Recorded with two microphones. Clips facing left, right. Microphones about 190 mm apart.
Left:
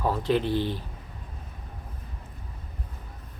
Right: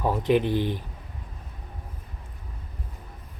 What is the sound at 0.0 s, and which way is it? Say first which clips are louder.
Speech: right 3 dB; 15° right (ahead or behind).